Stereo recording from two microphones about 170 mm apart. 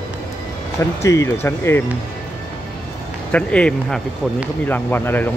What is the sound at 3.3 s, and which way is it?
Speech, 5° left (ahead or behind).